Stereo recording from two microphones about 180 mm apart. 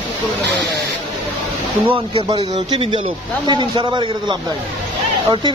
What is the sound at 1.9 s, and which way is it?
Speech, 30° right (ahead or behind).